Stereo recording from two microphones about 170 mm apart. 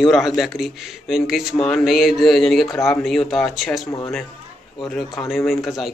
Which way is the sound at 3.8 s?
20° left (ahead or behind).